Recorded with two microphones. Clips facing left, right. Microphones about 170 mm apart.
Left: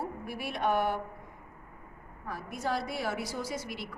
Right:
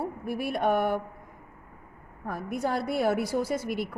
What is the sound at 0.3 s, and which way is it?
Speech, 50° right (ahead or behind).